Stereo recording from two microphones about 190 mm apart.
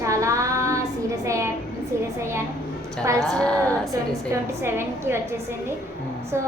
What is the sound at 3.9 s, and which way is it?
A woman's voice, 15° right (ahead or behind).